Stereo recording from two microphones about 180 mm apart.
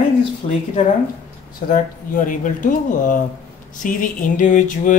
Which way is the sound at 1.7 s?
45° left (ahead or behind).